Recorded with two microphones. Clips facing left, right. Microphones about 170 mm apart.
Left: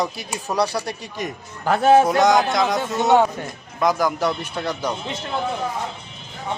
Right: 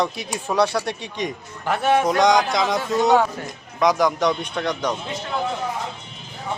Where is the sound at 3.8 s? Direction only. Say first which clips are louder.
Right 1 dB; centre (ahead or behind).